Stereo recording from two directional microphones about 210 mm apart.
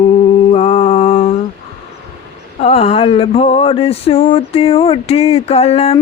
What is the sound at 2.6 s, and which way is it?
Mantra, 30° left (ahead or behind).